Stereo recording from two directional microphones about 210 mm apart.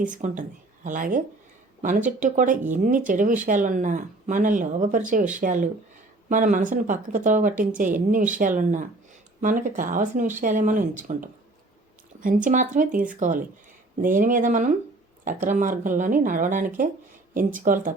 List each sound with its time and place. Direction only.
0.1 s speech: 35° right (ahead or behind)